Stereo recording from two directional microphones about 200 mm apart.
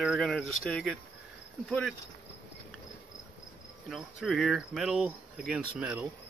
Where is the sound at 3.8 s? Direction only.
Centre (ahead or behind).